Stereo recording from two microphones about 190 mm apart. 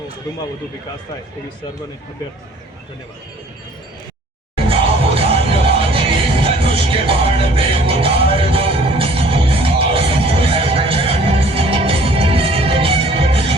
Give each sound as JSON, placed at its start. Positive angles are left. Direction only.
{"t": 4.5, "sound": "music", "side_deg": -30}